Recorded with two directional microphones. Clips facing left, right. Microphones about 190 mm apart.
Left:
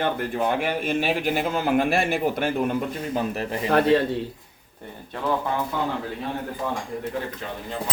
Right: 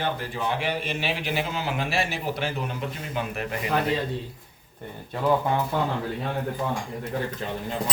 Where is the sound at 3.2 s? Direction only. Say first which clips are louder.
Left 3 dB; 35° left (ahead or behind).